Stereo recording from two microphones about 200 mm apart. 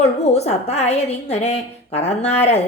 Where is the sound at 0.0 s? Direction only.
30° left (ahead or behind).